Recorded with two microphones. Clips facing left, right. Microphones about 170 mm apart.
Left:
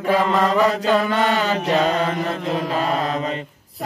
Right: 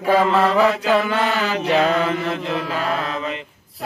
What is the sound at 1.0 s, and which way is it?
Mantra, 35° left (ahead or behind).